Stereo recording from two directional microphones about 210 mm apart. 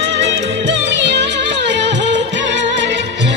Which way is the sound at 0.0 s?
60° right (ahead or behind).